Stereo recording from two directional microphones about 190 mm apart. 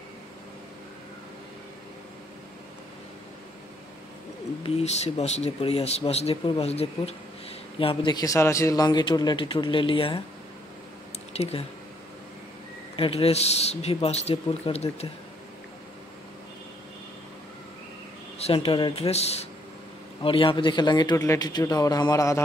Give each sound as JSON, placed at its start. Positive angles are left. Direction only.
{"t": 4.6, "sound": "speech", "side_deg": 35}
{"t": 11.3, "sound": "speech", "side_deg": 30}
{"t": 12.9, "sound": "speech", "side_deg": 30}
{"t": 18.4, "sound": "speech", "side_deg": 30}